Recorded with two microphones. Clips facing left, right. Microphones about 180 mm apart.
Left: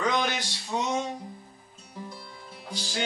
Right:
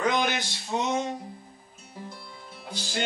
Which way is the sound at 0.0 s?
10° right (ahead or behind).